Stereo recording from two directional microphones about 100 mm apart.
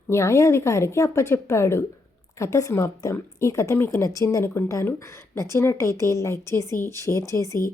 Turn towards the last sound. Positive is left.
turn(degrees=30)  # may be behind; listen again after turning